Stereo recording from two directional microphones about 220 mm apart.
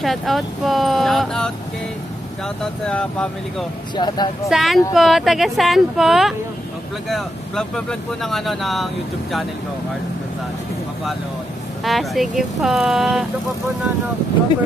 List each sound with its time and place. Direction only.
0.0 s speech: centre (ahead or behind)
3.9 s speech: 20° left (ahead or behind)
4.5 s speech: centre (ahead or behind)
11.8 s speech: centre (ahead or behind)